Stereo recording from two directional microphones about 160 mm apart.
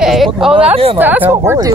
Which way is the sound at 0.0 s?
Centre (ahead or behind).